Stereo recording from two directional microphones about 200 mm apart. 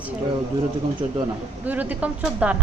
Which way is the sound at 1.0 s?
30° right (ahead or behind).